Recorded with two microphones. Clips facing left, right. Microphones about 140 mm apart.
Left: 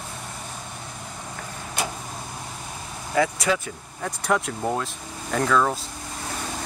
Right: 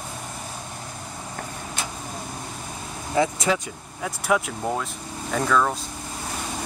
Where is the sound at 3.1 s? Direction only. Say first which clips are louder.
Even; 20° right (ahead or behind).